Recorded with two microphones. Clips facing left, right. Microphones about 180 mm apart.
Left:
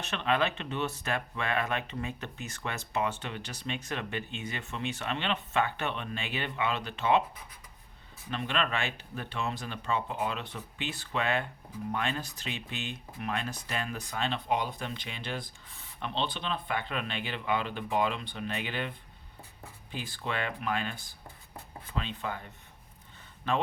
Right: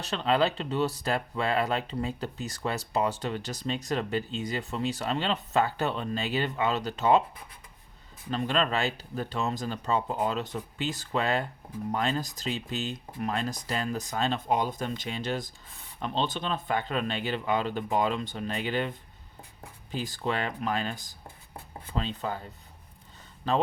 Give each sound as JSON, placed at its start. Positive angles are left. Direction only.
{"t": 0.0, "sound": "speech", "side_deg": -35}
{"t": 8.3, "sound": "speech", "side_deg": -40}
{"t": 23.5, "sound": "speech", "side_deg": -40}